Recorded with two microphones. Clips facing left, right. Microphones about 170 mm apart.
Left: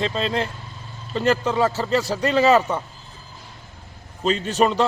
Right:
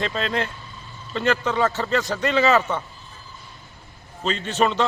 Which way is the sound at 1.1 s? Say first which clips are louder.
Left 2 dB; 35° left (ahead or behind).